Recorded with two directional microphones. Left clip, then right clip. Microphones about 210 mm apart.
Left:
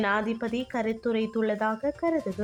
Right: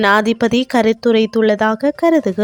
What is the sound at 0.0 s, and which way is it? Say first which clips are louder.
Speech: right 14 dB; 45° right (ahead or behind).